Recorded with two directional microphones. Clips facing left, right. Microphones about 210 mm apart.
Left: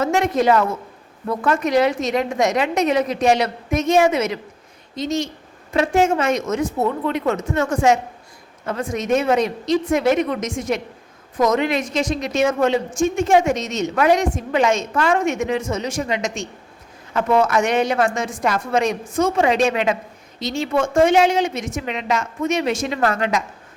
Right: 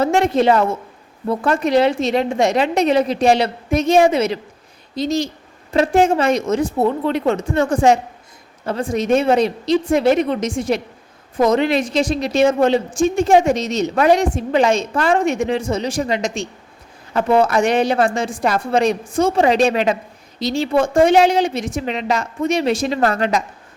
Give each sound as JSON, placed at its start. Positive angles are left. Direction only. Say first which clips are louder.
{"t": 0.0, "sound": "a woman's voice", "louder": "right 3 dB", "side_deg": -30}